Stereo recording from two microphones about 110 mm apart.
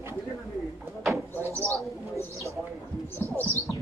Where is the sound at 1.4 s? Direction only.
25° right (ahead or behind).